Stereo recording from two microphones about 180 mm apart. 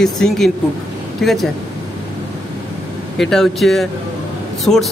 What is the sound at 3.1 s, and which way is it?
Speech, centre (ahead or behind).